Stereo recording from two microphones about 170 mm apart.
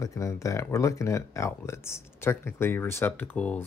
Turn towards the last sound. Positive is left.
turn(degrees=10)  # may be behind; listen again after turning